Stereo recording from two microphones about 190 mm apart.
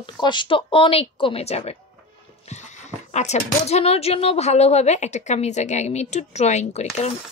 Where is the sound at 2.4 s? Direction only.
40° left (ahead or behind).